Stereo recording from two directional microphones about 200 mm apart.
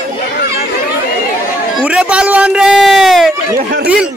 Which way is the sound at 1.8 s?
5° right (ahead or behind).